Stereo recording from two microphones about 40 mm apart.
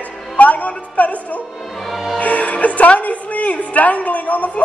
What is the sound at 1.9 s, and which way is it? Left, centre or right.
Music, centre.